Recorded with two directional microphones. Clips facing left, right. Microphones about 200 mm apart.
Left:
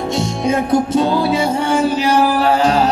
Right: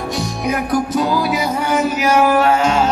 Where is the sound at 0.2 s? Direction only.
25° left (ahead or behind).